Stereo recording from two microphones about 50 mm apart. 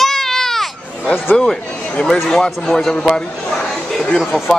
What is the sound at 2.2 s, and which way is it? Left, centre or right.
Speech, centre.